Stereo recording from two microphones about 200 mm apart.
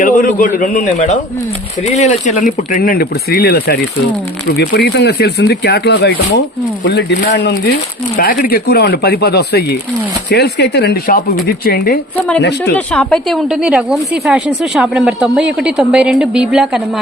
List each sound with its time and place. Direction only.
0.0 s a man's voice: 40° left (ahead or behind); by 12.7 s 60° left (ahead or behind)
12.7 s a woman's voice: 5° left (ahead or behind)